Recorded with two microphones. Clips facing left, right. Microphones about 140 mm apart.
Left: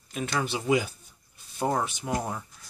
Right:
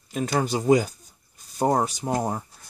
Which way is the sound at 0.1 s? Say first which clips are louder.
Right 5 dB; 40° right (ahead or behind).